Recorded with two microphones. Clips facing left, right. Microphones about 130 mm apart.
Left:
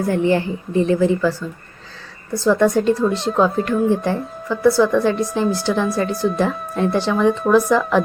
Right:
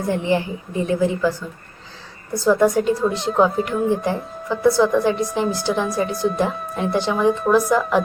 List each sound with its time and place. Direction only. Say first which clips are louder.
0.1 s speech: left 2 dB; 15° right (ahead or behind)
6.5 s speech: left 4 dB; 5° right (ahead or behind)
6.9 s speech: even; 15° right (ahead or behind)
7.3 s speech: left 2 dB; 5° right (ahead or behind)